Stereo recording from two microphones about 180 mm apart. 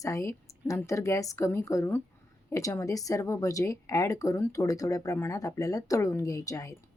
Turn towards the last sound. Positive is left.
turn(degrees=20)  # may be behind; listen again after turning